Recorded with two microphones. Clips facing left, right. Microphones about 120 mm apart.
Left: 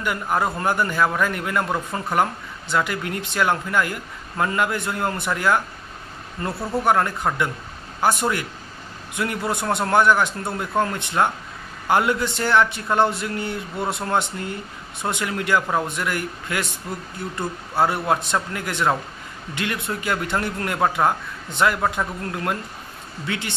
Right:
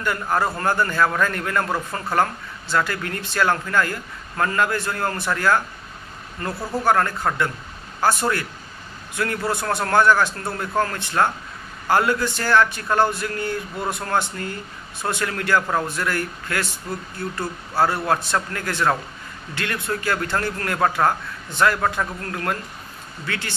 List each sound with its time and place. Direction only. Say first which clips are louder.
0.0 s speech: even; 15° left (ahead or behind)